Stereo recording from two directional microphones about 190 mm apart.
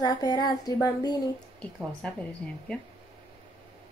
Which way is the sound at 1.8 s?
5° left (ahead or behind).